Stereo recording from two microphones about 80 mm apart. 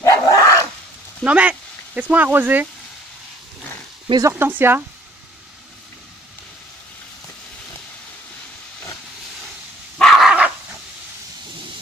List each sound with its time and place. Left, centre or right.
0.0 s dog: left
1.2 s speech: centre
4.3 s speech: right
9.9 s dog: centre